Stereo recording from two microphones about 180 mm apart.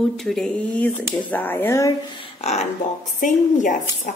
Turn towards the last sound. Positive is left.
turn(degrees=45)  # may be behind; listen again after turning